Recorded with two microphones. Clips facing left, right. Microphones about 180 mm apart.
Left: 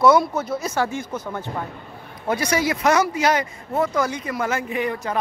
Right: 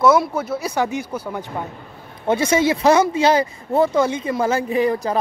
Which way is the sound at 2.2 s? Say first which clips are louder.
Right 5 dB; 25° right (ahead or behind).